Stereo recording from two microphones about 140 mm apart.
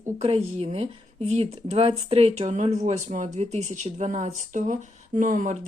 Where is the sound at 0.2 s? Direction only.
45° right (ahead or behind).